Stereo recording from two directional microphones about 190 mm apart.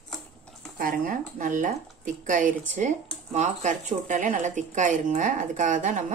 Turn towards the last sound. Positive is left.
turn(degrees=-40)  # may be behind; listen again after turning